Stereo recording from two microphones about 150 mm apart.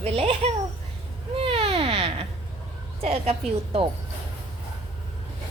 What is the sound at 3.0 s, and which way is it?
Speech, 45° right (ahead or behind).